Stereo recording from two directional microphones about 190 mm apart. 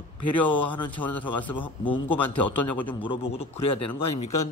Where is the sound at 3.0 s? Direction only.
25° left (ahead or behind).